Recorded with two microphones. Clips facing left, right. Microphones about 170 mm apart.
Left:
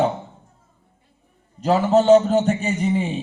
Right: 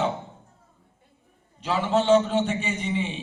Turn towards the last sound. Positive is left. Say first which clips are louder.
# left 6 dB
turn(degrees=40)  # may be behind; listen again after turning